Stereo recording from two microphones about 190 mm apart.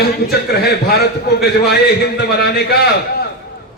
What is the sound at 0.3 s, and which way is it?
A man's voice, 55° left (ahead or behind).